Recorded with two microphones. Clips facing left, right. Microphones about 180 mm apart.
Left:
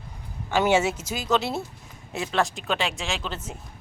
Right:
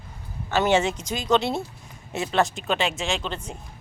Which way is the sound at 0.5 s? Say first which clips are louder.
Even; 10° left (ahead or behind).